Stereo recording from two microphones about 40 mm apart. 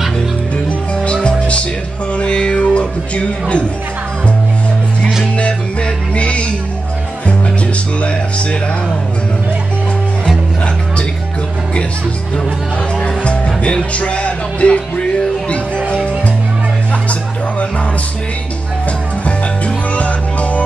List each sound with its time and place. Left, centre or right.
1.0 s music: left
6.1 s music: left
13.0 s music: left